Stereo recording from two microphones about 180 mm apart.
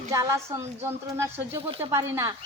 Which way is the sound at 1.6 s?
30° right (ahead or behind).